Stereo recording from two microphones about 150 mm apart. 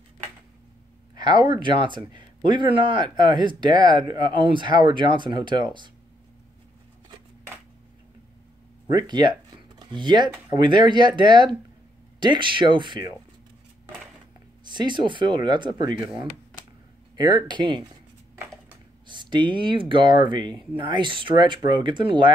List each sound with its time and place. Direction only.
1.2 s speech: 30° right (ahead or behind)
8.9 s speech: 30° right (ahead or behind)
14.6 s speech: 30° right (ahead or behind)
17.1 s speech: 30° right (ahead or behind)
19.0 s speech: 30° right (ahead or behind)